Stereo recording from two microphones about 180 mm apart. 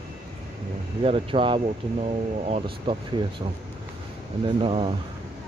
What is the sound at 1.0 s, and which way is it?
Speech, 30° right (ahead or behind).